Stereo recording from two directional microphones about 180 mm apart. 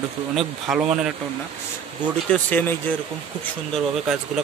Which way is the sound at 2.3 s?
10° left (ahead or behind).